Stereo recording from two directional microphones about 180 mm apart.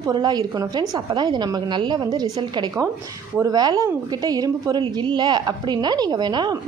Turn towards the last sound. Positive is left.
turn(degrees=-25)  # may be behind; listen again after turning